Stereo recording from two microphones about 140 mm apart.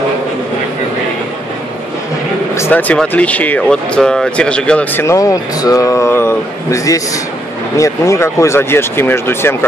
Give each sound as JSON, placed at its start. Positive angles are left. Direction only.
{"t": 2.5, "sound": "speech", "side_deg": 15}
{"t": 5.0, "sound": "speech", "side_deg": 25}